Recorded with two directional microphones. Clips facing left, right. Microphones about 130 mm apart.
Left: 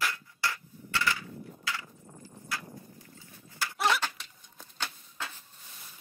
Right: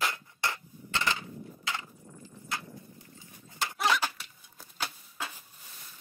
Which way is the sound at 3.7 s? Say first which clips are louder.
Even; centre (ahead or behind).